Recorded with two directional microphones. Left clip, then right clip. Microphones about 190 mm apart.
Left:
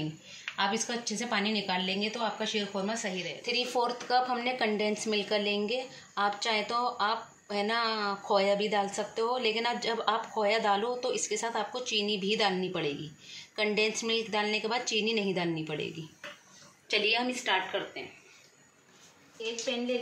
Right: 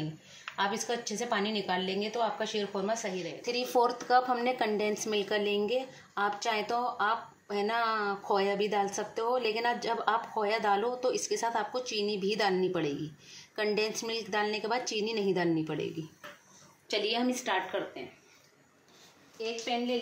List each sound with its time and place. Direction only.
0.6 s a woman's voice: 35° right (ahead or behind)
16.8 s a woman's voice: 40° right (ahead or behind)